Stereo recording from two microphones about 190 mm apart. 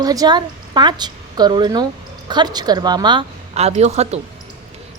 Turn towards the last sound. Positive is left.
turn(degrees=-35)  # may be behind; listen again after turning